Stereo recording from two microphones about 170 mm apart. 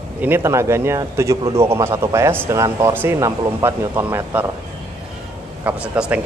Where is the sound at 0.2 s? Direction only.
15° right (ahead or behind).